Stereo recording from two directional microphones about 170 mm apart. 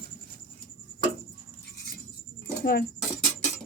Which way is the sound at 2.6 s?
65° left (ahead or behind).